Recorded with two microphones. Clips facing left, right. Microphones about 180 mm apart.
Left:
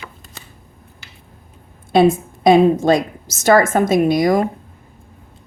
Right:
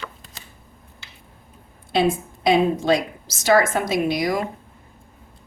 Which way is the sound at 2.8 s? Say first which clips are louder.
Left 5 dB; 45° left (ahead or behind).